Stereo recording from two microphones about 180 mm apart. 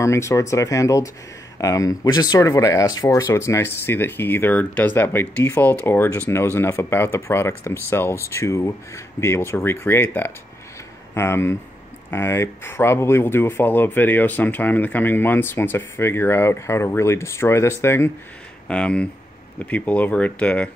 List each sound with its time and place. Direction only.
0.0 s speech: 15° left (ahead or behind)